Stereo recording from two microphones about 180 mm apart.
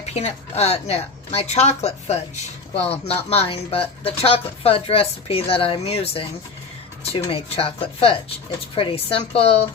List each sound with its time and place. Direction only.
0.1 s speech: 35° left (ahead or behind)